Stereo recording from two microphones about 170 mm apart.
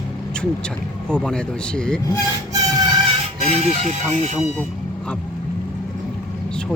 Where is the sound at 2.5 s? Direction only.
20° right (ahead or behind).